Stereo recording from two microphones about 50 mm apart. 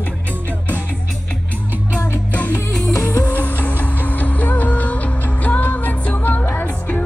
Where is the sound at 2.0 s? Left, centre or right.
Left.